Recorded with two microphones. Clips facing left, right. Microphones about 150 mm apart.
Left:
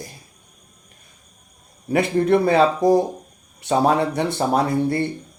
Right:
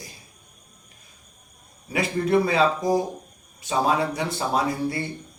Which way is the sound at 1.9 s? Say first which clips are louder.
Left 6 dB; 55° left (ahead or behind).